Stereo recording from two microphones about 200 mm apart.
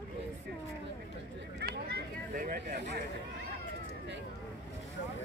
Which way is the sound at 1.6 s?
50° right (ahead or behind).